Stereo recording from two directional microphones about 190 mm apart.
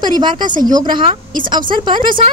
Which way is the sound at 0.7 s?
25° right (ahead or behind).